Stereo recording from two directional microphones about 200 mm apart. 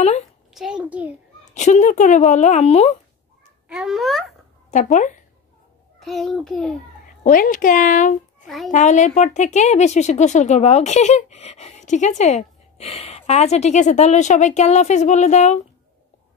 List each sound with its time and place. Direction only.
0.6 s a child's voice: 5° right (ahead or behind)
1.5 s speech: 35° left (ahead or behind)
3.6 s a child's voice: 5° right (ahead or behind)
4.6 s speech: 35° left (ahead or behind)
5.9 s a child's voice: centre (ahead or behind)
7.2 s speech: 40° left (ahead or behind)
8.5 s a child's voice: centre (ahead or behind)
8.7 s speech: 35° left (ahead or behind)